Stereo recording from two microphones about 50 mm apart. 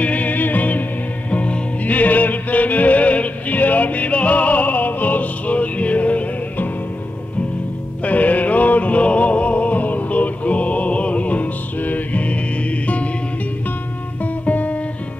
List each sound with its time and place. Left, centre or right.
0.0 s music: left
8.0 s music: left
14.2 s music: left